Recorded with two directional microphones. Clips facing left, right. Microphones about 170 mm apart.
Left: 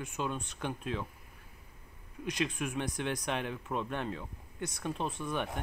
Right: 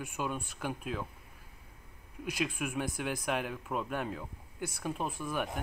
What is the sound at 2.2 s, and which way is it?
Speech, 5° right (ahead or behind).